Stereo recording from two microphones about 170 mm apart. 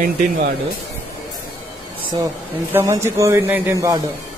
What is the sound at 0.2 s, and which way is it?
Speech, 50° right (ahead or behind).